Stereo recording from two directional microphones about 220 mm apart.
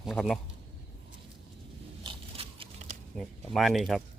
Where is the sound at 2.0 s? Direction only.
25° right (ahead or behind).